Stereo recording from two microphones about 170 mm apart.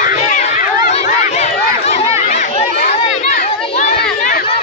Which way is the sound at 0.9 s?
40° left (ahead or behind).